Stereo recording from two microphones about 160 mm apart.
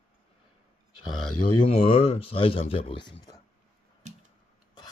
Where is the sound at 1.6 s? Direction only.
35° left (ahead or behind).